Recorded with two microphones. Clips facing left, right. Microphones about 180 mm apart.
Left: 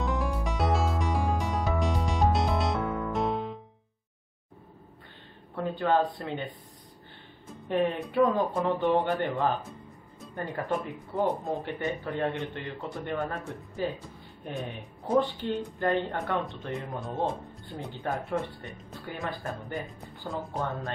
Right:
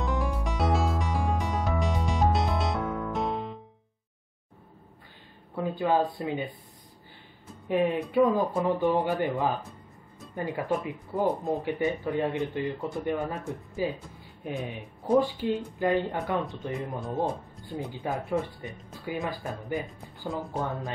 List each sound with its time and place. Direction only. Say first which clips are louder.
0.0 s music: even; centre (ahead or behind)
5.6 s speech: even; 10° right (ahead or behind)
7.6 s speech: right 2 dB; 5° right (ahead or behind)